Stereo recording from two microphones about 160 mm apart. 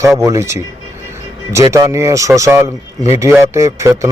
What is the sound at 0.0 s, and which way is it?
Speech, 20° right (ahead or behind).